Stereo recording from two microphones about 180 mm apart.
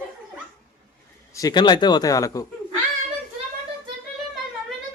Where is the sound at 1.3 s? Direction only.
20° left (ahead or behind).